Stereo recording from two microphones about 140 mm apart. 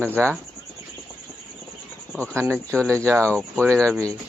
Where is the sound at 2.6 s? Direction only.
10° left (ahead or behind).